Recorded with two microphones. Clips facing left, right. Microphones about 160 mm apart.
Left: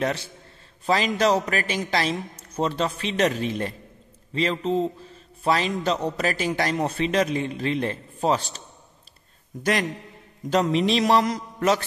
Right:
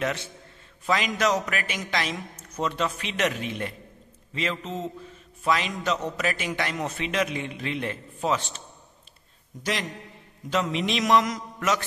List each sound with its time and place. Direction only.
0.0 s a man's voice: 35° left (ahead or behind)
9.6 s a man's voice: 55° left (ahead or behind)
10.5 s a man's voice: 35° left (ahead or behind)